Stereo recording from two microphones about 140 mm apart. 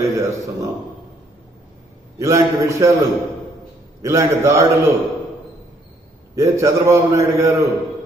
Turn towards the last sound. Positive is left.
turn(degrees=-20)  # may be behind; listen again after turning